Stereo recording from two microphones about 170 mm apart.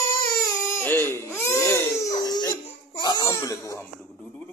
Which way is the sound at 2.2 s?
25° left (ahead or behind).